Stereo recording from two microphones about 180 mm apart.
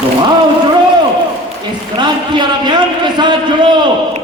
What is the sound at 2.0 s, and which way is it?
A man's voice, 25° right (ahead or behind).